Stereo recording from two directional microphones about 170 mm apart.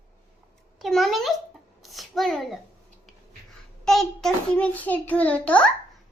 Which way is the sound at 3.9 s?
5° left (ahead or behind).